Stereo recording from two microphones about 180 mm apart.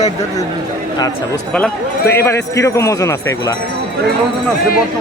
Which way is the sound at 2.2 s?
15° left (ahead or behind).